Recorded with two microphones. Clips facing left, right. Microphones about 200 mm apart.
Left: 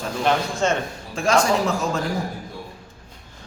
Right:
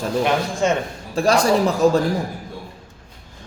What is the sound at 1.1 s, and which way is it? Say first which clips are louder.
Speech: right 3 dB; 35° right (ahead or behind).